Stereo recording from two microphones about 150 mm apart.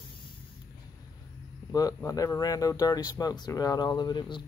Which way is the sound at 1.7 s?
25° left (ahead or behind).